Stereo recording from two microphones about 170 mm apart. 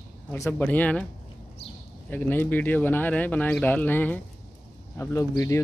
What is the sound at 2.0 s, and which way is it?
Speech, 10° left (ahead or behind).